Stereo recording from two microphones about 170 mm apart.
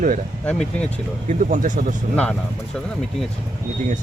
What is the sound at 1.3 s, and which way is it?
Speech, 45° right (ahead or behind).